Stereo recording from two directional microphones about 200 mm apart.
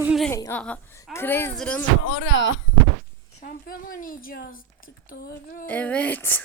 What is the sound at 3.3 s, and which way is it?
Speech, 45° left (ahead or behind).